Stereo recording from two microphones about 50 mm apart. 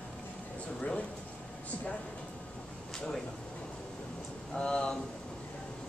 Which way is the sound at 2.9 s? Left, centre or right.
Centre.